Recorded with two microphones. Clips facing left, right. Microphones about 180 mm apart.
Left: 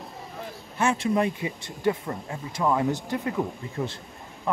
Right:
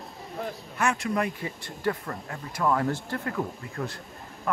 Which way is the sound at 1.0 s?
25° left (ahead or behind).